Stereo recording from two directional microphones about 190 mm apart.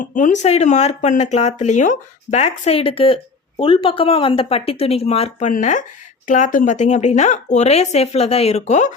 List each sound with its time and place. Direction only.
0.0 s speech: 40° left (ahead or behind)